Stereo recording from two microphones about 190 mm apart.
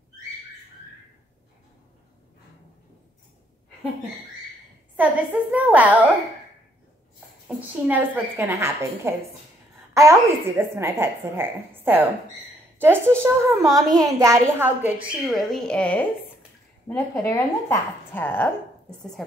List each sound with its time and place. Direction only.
4.9 s a woman's voice: 10° right (ahead or behind)
7.4 s a woman's voice: 10° right (ahead or behind)
12.7 s a sound: 10° right (ahead or behind)
13.2 s a woman's voice: 15° right (ahead or behind)
15.2 s a woman's voice: centre (ahead or behind)